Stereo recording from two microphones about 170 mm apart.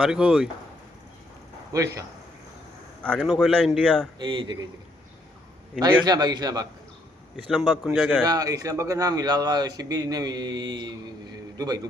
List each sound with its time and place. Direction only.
0.0 s a man's voice: 5° right (ahead or behind)
1.7 s a man's voice: 20° right (ahead or behind)
3.0 s a man's voice: 5° left (ahead or behind)
4.2 s a man's voice: 25° right (ahead or behind)
6.1 s a man's voice: 25° right (ahead or behind)
7.3 s a man's voice: centre (ahead or behind)
8.2 s a man's voice: 20° right (ahead or behind)